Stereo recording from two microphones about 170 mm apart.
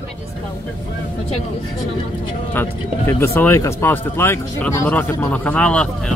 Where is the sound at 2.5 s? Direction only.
15° left (ahead or behind).